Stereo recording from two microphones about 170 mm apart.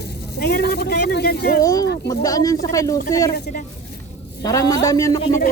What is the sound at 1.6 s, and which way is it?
Speech, 20° left (ahead or behind).